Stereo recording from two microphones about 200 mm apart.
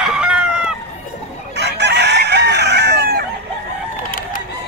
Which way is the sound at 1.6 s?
60° right (ahead or behind).